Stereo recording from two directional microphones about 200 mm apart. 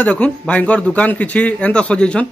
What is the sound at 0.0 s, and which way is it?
Speech, 5° left (ahead or behind).